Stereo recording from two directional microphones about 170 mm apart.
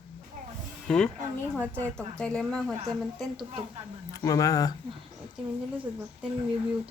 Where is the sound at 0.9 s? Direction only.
5° left (ahead or behind).